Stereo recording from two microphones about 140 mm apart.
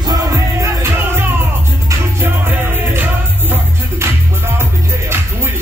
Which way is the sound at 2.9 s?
15° right (ahead or behind).